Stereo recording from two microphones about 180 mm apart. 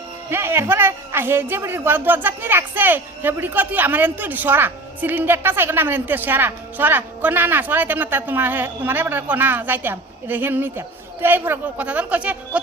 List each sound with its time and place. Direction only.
0.3 s speech: 15° right (ahead or behind)